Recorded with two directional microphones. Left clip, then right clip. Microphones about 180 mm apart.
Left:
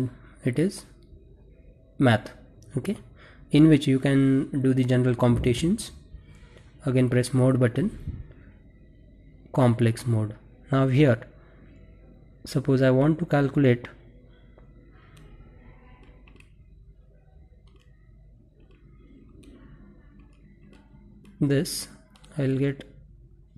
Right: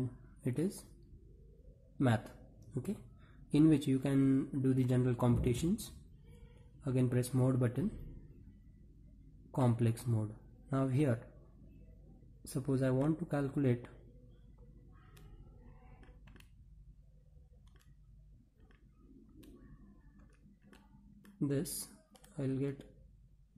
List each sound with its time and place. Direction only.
0.4 s speech: 20° left (ahead or behind)
2.0 s a sound: 20° left (ahead or behind)
3.4 s speech: 20° left (ahead or behind)
9.5 s speech: 20° left (ahead or behind)
12.4 s speech: 20° left (ahead or behind)
21.4 s speech: 20° left (ahead or behind)